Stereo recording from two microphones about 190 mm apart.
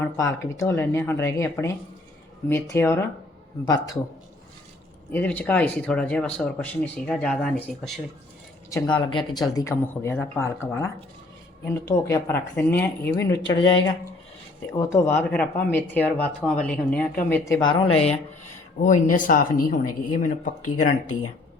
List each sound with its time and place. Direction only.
0.0 s speech: 15° left (ahead or behind)
5.1 s speech: 10° left (ahead or behind)
8.7 s speech: 15° left (ahead or behind)
18.8 s speech: 40° left (ahead or behind)